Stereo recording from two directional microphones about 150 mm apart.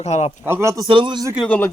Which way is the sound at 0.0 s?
45° left (ahead or behind).